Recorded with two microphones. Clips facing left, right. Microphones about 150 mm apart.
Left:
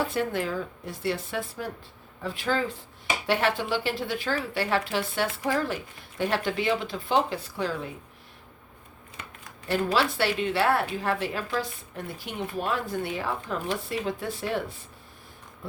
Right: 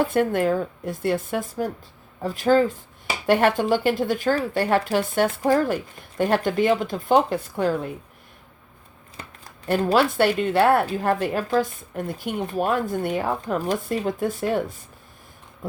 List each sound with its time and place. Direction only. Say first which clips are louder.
0.0 s a woman's voice: right 7 dB; 50° right (ahead or behind)
9.2 s scissors: right 3 dB; 35° right (ahead or behind)
9.6 s a woman's voice: right 5 dB; 50° right (ahead or behind)